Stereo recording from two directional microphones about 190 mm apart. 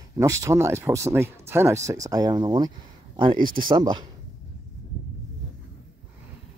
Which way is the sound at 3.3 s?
45° right (ahead or behind).